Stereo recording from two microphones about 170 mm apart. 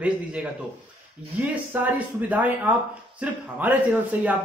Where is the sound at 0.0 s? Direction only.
5° right (ahead or behind).